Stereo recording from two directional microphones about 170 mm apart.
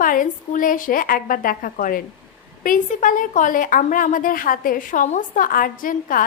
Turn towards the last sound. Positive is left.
turn(degrees=55)  # may be behind; listen again after turning